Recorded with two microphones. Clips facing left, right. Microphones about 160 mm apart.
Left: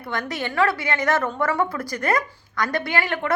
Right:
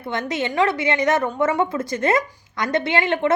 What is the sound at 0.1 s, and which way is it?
A woman's voice, 20° right (ahead or behind).